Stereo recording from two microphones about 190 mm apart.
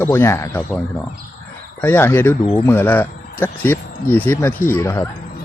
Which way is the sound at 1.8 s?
10° left (ahead or behind).